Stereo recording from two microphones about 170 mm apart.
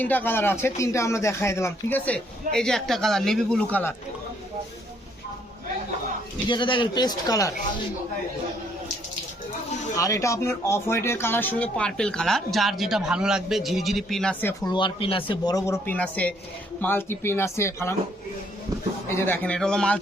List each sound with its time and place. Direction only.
0.0 s speech: 10° left (ahead or behind)
6.5 s speech: 30° left (ahead or behind)
9.9 s speech: 20° left (ahead or behind)
14.7 s speech: 30° left (ahead or behind)
19.0 s speech: 15° left (ahead or behind)